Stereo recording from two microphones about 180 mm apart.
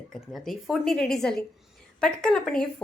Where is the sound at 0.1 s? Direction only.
Centre (ahead or behind).